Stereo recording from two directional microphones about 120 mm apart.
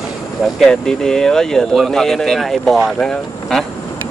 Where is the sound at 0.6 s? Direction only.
5° left (ahead or behind).